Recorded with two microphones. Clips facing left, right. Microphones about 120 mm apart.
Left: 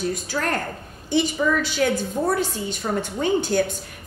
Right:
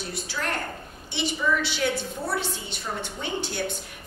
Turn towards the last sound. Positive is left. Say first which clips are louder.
# left 10 dB
turn(degrees=45)  # may be behind; listen again after turning